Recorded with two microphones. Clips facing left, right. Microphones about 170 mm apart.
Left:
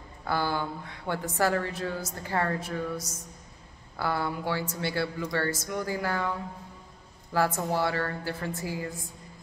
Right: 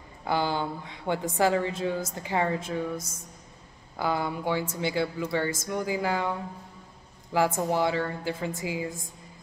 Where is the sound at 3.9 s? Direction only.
15° right (ahead or behind).